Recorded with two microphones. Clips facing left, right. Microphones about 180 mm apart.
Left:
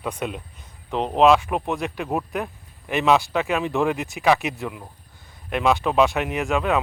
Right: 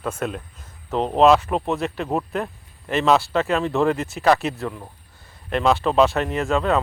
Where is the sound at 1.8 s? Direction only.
10° left (ahead or behind).